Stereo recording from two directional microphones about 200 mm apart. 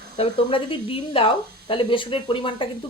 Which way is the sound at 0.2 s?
25° left (ahead or behind).